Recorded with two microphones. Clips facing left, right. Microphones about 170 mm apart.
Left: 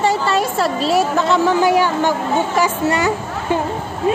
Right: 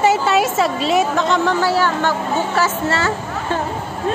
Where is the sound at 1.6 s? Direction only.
15° left (ahead or behind).